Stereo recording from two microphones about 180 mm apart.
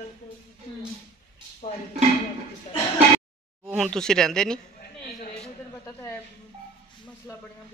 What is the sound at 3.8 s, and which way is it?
Speech, 5° left (ahead or behind).